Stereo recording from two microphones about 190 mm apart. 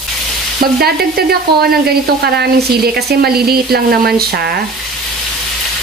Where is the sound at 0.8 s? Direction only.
55° right (ahead or behind).